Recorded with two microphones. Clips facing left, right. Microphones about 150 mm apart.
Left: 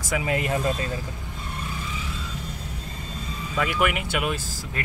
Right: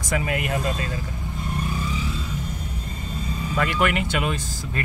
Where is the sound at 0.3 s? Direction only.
25° left (ahead or behind).